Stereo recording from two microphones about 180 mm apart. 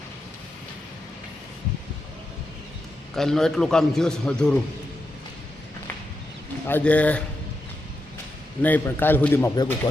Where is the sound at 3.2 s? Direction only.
5° left (ahead or behind).